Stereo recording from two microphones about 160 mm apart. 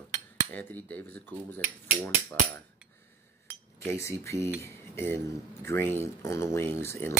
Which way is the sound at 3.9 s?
20° left (ahead or behind).